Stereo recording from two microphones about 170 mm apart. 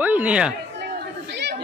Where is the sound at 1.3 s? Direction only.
80° right.